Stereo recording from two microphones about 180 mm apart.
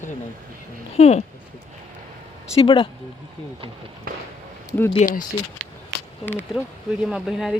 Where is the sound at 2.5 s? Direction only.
30° left (ahead or behind).